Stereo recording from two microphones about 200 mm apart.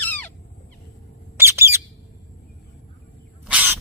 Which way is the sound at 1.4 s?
15° right (ahead or behind).